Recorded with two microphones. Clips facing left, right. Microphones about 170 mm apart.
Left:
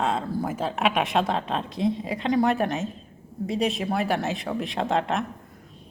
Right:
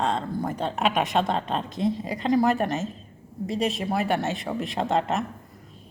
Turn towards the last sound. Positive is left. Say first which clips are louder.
# even
turn(degrees=0)  # may be behind; listen again after turning